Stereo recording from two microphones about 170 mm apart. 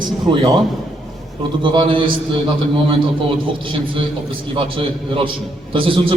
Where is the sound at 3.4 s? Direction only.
30° right (ahead or behind).